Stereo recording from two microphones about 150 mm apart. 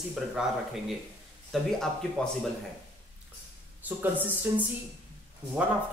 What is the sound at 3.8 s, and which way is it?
Speech, 15° right (ahead or behind).